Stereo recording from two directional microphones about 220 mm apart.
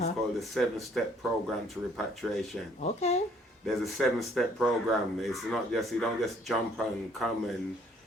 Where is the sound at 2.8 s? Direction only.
30° left (ahead or behind).